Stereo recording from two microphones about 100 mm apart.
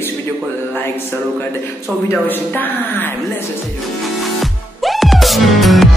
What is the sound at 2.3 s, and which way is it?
Speech, 20° left (ahead or behind).